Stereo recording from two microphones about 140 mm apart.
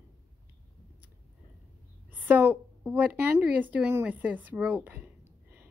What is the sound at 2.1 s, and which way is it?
A woman's voice, 10° right (ahead or behind).